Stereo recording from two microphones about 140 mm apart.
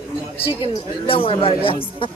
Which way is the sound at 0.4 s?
40° left (ahead or behind).